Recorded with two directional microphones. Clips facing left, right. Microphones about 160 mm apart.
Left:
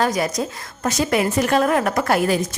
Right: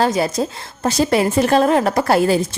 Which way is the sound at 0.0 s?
30° right (ahead or behind).